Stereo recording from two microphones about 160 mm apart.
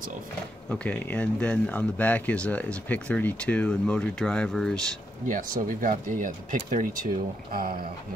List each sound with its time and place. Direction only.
0.7 s speech: 10° left (ahead or behind)
5.3 s speech: 60° right (ahead or behind)